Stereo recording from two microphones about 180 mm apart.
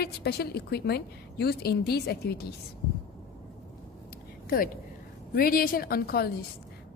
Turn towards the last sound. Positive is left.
turn(degrees=60)  # may be behind; listen again after turning